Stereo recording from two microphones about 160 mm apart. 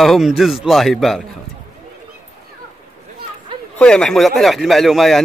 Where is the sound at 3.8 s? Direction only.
5° left (ahead or behind).